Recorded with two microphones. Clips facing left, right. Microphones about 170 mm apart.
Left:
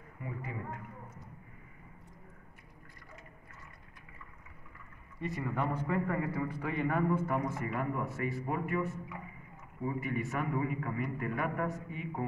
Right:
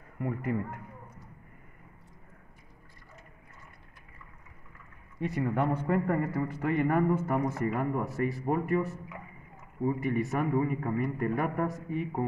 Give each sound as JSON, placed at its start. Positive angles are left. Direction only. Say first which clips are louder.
{"t": 0.2, "sound": "speech", "louder": "right 10 dB", "side_deg": -60}
{"t": 5.2, "sound": "a man's voice", "louder": "right 6 dB", "side_deg": -65}